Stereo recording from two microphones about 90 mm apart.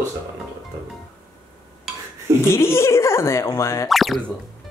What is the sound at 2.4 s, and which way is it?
Speech, 30° left (ahead or behind).